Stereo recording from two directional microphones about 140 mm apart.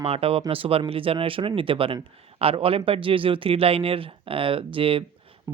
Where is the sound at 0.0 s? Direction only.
45° right (ahead or behind).